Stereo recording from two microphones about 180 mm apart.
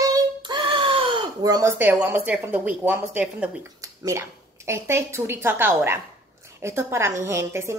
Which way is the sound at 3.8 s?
20° right (ahead or behind).